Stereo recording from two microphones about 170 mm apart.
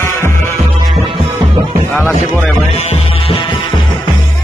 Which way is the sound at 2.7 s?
40° left (ahead or behind).